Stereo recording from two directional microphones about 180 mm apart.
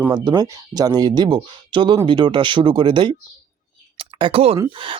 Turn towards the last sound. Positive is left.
turn(degrees=-30)  # may be behind; listen again after turning